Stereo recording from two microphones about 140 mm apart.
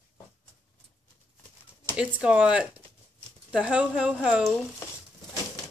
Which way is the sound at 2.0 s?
10° right (ahead or behind).